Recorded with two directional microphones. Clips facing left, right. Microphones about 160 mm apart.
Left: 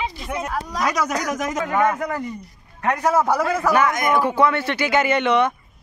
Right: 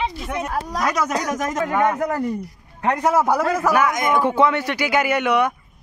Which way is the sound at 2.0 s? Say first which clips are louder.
Right 4 dB; 40° right (ahead or behind).